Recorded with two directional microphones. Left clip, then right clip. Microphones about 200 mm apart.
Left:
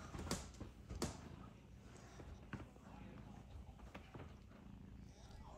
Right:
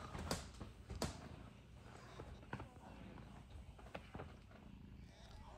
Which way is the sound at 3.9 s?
20° right (ahead or behind).